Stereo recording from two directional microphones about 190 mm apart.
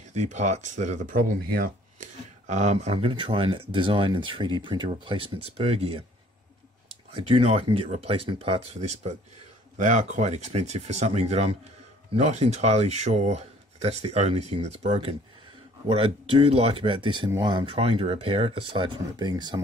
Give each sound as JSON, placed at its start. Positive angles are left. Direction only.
{"t": 0.1, "sound": "speech", "side_deg": -40}
{"t": 2.4, "sound": "speech", "side_deg": -35}
{"t": 7.2, "sound": "speech", "side_deg": -30}